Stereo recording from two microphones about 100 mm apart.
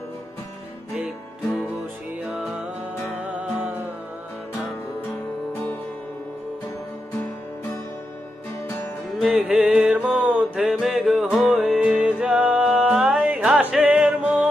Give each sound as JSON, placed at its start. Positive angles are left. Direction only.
{"t": 0.9, "sound": "music", "side_deg": -15}
{"t": 3.2, "sound": "music", "side_deg": -15}
{"t": 8.6, "sound": "music", "side_deg": 25}
{"t": 9.4, "sound": "mantra", "side_deg": -10}
{"t": 10.7, "sound": "music", "side_deg": -5}